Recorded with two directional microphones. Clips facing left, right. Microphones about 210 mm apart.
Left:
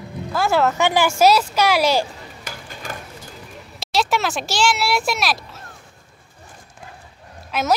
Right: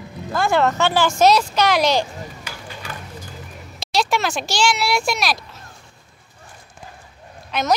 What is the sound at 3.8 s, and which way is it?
Speech, 5° left (ahead or behind).